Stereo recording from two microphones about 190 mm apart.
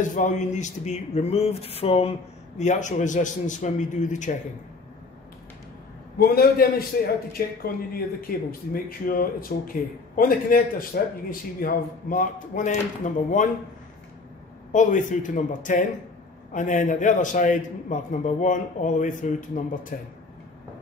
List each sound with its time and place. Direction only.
0.0 s speech: 40° left (ahead or behind)
6.1 s speech: 50° left (ahead or behind)
14.7 s speech: 40° left (ahead or behind)